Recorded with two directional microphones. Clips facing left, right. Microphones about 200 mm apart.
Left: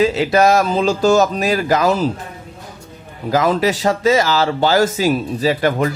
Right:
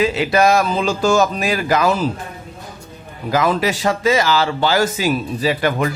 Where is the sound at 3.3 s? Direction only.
40° left (ahead or behind).